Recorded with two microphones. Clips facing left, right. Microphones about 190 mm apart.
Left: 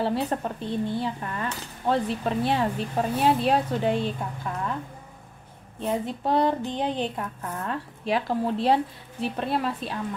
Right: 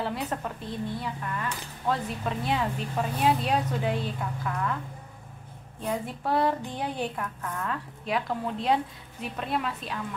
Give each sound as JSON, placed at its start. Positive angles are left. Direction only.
{"t": 0.0, "sound": "speech", "side_deg": 30}
{"t": 5.8, "sound": "speech", "side_deg": 25}